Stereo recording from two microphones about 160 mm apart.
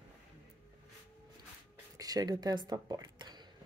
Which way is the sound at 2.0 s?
25° right (ahead or behind).